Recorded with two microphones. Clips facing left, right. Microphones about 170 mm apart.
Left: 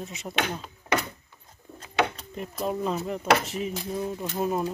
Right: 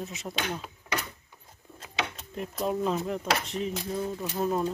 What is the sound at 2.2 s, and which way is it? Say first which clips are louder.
Speech: even; centre (ahead or behind).